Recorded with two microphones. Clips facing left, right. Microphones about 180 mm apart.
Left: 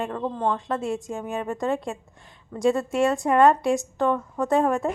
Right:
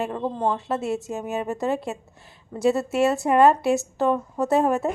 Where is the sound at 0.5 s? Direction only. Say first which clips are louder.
Right 1 dB; 5° right (ahead or behind).